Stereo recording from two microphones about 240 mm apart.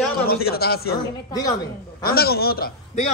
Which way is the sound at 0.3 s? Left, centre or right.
Left.